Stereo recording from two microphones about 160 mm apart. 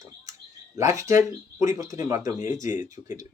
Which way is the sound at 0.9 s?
20° right (ahead or behind).